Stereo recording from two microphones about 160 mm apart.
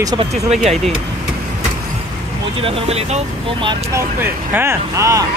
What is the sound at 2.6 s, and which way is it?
Speech, 40° right (ahead or behind).